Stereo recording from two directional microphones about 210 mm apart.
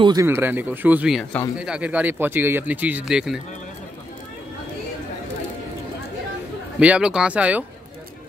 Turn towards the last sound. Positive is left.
turn(degrees=-5)  # may be behind; listen again after turning